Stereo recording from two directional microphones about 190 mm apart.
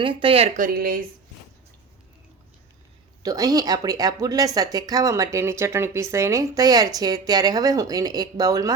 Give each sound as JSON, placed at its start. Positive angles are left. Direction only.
{"t": 0.0, "sound": "speech", "side_deg": -25}
{"t": 3.2, "sound": "speech", "side_deg": -20}